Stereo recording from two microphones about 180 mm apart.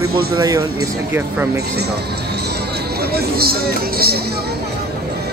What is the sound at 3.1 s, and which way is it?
Speech, 60° right (ahead or behind).